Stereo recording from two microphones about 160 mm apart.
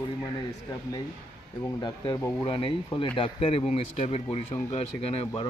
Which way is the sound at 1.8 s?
25° left (ahead or behind).